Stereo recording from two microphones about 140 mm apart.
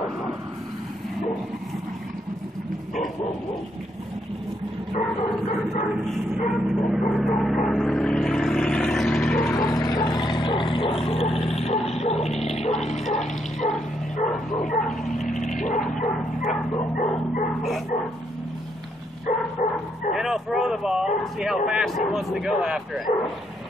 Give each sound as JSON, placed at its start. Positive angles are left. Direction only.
{"t": 6.3, "sound": "vehicle", "side_deg": -5}
{"t": 9.5, "sound": "a sound", "side_deg": 25}
{"t": 11.1, "sound": "dog", "side_deg": 45}
{"t": 14.6, "sound": "bow-wow", "side_deg": 65}
{"t": 14.9, "sound": "vehicle", "side_deg": 0}
{"t": 15.9, "sound": "bow-wow", "side_deg": 65}
{"t": 19.6, "sound": "bow-wow", "side_deg": 70}
{"t": 20.1, "sound": "a sound", "side_deg": 0}
{"t": 21.2, "sound": "a man's voice", "side_deg": 0}